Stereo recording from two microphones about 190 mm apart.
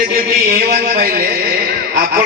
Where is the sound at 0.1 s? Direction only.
50° right (ahead or behind).